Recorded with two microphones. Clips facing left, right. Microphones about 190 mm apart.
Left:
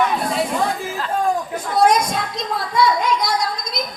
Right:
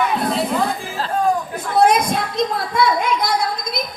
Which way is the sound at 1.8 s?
55° right (ahead or behind).